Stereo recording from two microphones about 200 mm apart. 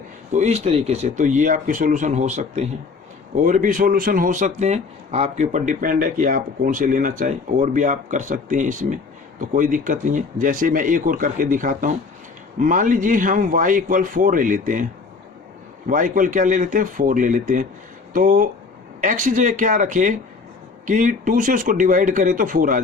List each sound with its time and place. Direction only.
0.3 s speech: 35° right (ahead or behind)
15.9 s speech: 40° right (ahead or behind)